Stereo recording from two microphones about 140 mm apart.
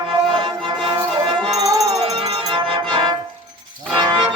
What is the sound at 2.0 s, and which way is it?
Music, 45° right (ahead or behind).